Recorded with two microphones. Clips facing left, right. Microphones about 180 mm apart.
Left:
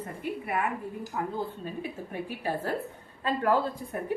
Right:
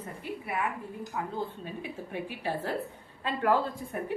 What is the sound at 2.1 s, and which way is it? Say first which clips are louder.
A woman's voice: even; 45° left (ahead or behind).